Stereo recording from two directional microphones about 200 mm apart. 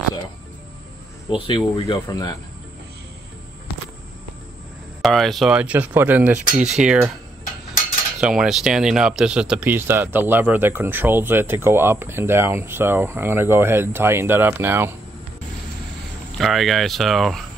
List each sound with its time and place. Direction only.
1.3 s speech: 25° left (ahead or behind)
5.0 s speech: centre (ahead or behind)
8.2 s speech: 5° right (ahead or behind)
16.3 s speech: centre (ahead or behind)